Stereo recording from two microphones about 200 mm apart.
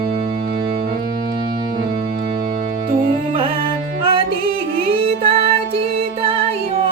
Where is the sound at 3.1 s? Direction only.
25° right (ahead or behind).